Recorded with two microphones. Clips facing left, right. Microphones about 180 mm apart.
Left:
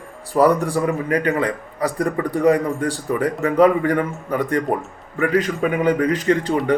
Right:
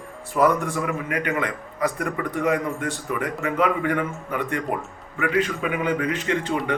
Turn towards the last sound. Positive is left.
turn(degrees=35)  # may be behind; listen again after turning